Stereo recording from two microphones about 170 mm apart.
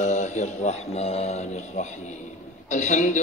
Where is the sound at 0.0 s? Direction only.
45° left (ahead or behind).